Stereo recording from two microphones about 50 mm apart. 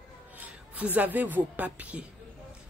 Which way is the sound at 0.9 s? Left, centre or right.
Right.